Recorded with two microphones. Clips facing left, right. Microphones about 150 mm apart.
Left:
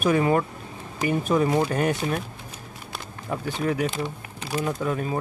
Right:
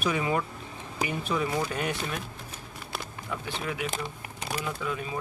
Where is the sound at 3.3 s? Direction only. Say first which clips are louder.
Left 8 dB; 40° left (ahead or behind).